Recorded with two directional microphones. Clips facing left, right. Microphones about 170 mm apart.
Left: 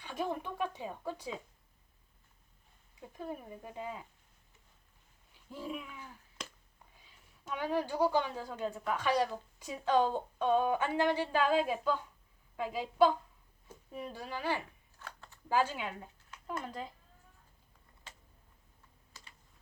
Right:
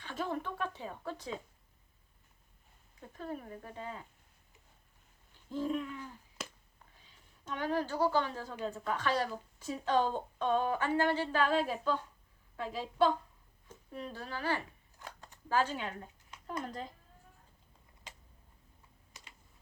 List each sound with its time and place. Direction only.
0.0 s a sound: 15° left (ahead or behind)
3.0 s a woman's voice: 10° left (ahead or behind)
5.5 s a woman's voice: 10° left (ahead or behind)
14.9 s a sound: 15° right (ahead or behind)
15.4 s a woman's voice: 10° left (ahead or behind)
19.1 s computer keyboard: 20° right (ahead or behind)